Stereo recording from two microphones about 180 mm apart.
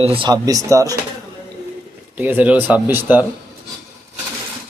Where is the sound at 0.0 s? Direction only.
30° right (ahead or behind).